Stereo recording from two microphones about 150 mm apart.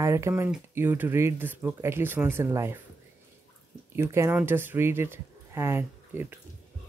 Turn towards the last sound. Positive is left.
turn(degrees=-15)  # may be behind; listen again after turning